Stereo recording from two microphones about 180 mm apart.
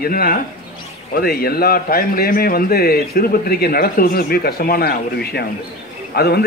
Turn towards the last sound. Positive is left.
turn(degrees=60)  # may be behind; listen again after turning